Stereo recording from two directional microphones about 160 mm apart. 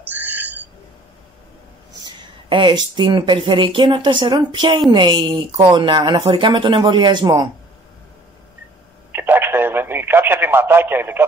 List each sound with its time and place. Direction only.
0.1 s a sound: 10° right (ahead or behind)
2.5 s speech: 30° right (ahead or behind)
9.1 s telephone: 15° right (ahead or behind)